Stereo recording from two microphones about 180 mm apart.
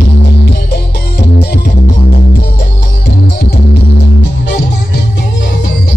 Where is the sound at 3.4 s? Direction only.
65° left (ahead or behind).